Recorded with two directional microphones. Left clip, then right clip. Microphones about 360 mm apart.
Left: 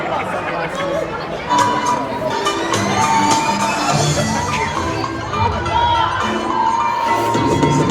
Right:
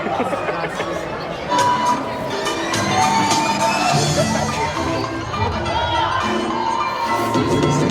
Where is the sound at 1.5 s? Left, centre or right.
Centre.